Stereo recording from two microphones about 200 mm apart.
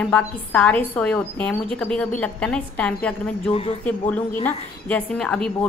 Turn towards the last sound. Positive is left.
turn(degrees=5)  # may be behind; listen again after turning